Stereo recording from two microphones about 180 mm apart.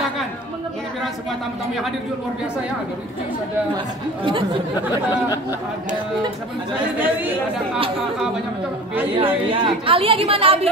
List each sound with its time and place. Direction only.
4.2 s speech: 30° right (ahead or behind)
9.2 s a woman's voice: 30° right (ahead or behind)